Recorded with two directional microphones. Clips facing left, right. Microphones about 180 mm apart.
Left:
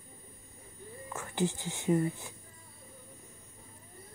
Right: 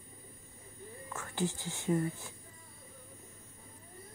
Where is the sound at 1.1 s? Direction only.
20° left (ahead or behind).